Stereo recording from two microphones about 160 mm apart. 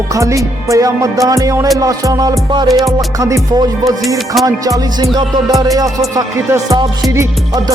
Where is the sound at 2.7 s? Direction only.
Centre (ahead or behind).